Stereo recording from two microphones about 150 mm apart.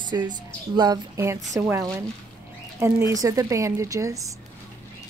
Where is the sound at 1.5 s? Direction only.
15° right (ahead or behind).